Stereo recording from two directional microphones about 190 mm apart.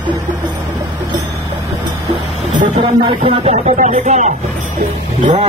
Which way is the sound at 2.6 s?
25° right (ahead or behind).